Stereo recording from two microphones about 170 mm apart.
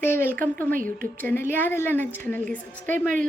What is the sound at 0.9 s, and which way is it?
A woman's voice, 10° left (ahead or behind).